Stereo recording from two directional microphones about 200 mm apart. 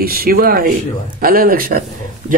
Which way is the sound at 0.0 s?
45° right (ahead or behind).